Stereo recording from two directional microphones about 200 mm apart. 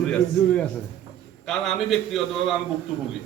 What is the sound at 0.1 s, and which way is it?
A man's voice, 5° left (ahead or behind).